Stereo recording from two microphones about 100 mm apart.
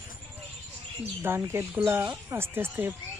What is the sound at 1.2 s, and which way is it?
Speech, 25° right (ahead or behind).